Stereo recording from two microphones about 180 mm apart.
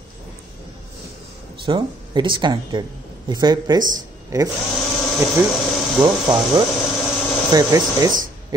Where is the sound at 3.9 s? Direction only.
20° right (ahead or behind).